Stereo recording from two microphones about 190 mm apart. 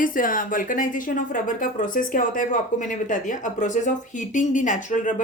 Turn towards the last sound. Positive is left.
turn(degrees=40)  # may be behind; listen again after turning